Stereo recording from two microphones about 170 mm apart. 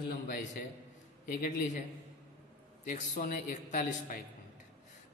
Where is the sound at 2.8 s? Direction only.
60° left (ahead or behind).